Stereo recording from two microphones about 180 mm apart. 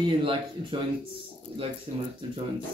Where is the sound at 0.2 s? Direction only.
30° right (ahead or behind).